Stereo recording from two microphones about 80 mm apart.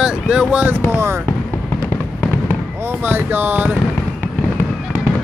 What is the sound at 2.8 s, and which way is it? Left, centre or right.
Speech, right.